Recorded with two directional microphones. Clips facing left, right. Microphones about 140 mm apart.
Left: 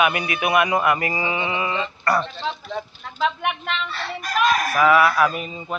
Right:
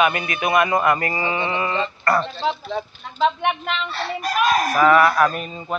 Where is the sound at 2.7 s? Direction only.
Centre (ahead or behind).